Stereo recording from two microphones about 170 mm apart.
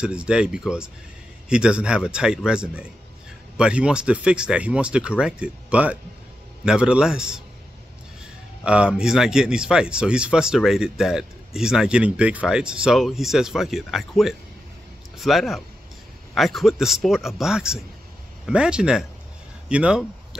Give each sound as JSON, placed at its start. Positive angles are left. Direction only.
{"t": 0.0, "sound": "speech", "side_deg": -5}
{"t": 8.6, "sound": "speech", "side_deg": -5}